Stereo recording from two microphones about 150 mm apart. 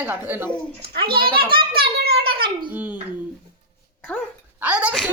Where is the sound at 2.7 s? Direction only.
10° right (ahead or behind).